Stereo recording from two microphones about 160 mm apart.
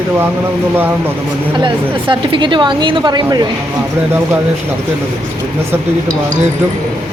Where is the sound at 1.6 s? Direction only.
30° right (ahead or behind).